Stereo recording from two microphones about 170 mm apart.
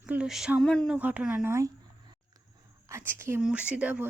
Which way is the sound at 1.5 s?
15° right (ahead or behind).